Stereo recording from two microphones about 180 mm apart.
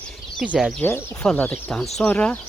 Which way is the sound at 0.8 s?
10° left (ahead or behind).